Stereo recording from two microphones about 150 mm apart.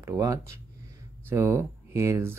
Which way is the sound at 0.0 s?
20° right (ahead or behind).